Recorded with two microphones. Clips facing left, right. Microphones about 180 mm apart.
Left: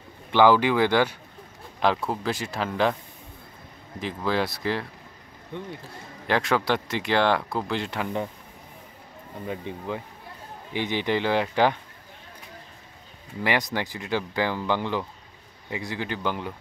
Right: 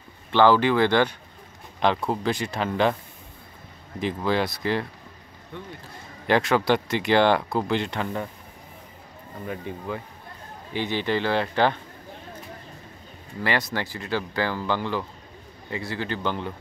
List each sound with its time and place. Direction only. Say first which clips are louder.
0.3 s a man's voice: even; 10° left (ahead or behind)
4.0 s a man's voice: right 2 dB; centre (ahead or behind)
5.5 s speech: left 3 dB; 20° left (ahead or behind)
6.2 s a man's voice: right 3 dB; centre (ahead or behind)
9.5 s speech: even; 20° left (ahead or behind)
13.4 s speech: even; 15° left (ahead or behind)